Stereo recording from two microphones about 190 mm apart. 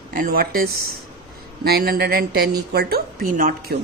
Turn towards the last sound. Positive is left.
turn(degrees=-45)  # may be behind; listen again after turning